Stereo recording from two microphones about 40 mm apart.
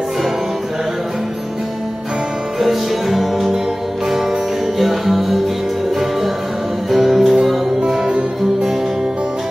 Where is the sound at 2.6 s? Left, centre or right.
Centre.